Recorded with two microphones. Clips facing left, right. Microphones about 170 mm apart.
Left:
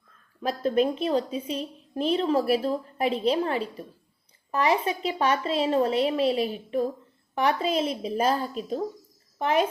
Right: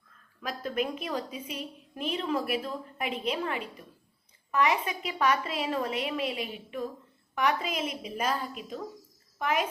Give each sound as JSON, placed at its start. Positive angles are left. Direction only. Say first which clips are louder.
{"t": 0.4, "sound": "a woman's voice", "louder": "left 8 dB", "side_deg": 30}